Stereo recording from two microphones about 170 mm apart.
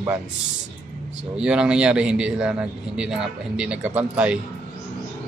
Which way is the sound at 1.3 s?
5° right (ahead or behind).